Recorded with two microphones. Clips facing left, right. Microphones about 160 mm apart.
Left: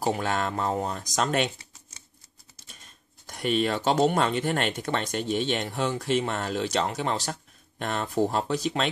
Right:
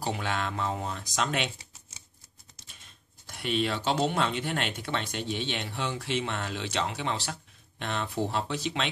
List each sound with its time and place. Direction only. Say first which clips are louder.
0.0 s speech: left 5 dB; 45° left (ahead or behind)
2.7 s speech: left 6 dB; 45° left (ahead or behind)